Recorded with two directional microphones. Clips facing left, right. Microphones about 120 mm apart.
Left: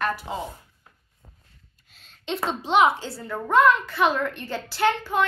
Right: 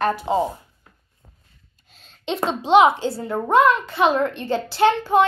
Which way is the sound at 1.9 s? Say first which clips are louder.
Right 4 dB; 20° right (ahead or behind).